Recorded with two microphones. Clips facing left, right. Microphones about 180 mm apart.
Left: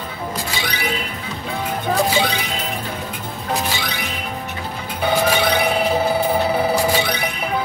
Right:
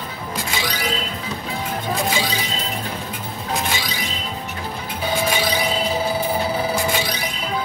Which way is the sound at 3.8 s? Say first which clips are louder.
Left 1 dB; 60° left (ahead or behind).